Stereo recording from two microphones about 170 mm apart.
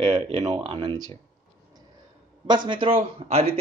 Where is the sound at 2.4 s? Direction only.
25° right (ahead or behind).